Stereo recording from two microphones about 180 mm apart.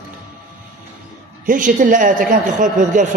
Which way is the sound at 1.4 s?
45° right (ahead or behind).